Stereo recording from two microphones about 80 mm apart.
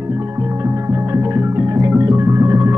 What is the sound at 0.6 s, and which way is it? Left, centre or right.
Music, right.